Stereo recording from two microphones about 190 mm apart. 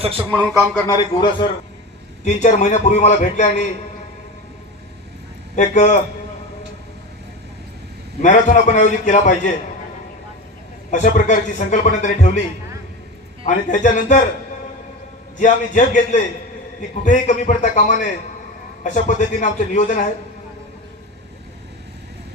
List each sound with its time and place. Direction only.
0.3 s speech: 5° left (ahead or behind)
0.9 s a man's voice: 25° left (ahead or behind)
2.2 s a man's voice: 40° left (ahead or behind)
5.5 s a man's voice: 40° left (ahead or behind)
8.2 s a man's voice: 40° left (ahead or behind)
10.9 s a man's voice: 40° left (ahead or behind)
13.4 s a man's voice: 40° left (ahead or behind)
15.4 s a man's voice: 40° left (ahead or behind)